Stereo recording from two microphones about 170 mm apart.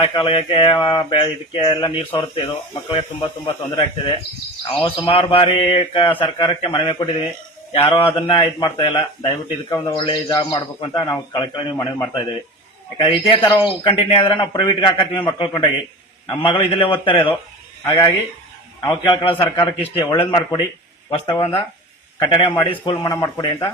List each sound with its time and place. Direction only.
0.0 s a man's voice: 30° left (ahead or behind)
13.0 s a man's voice: 30° left (ahead or behind)